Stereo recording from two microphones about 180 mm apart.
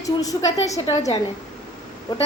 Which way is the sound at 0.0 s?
20° left (ahead or behind).